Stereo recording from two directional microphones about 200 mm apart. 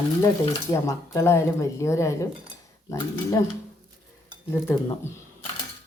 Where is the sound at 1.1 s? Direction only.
15° left (ahead or behind).